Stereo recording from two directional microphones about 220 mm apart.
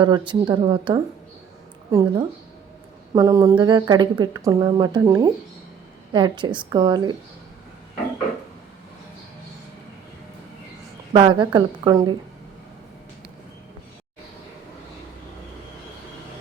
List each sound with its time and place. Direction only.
0.0 s speech: 20° right (ahead or behind)
11.1 s speech: 20° right (ahead or behind)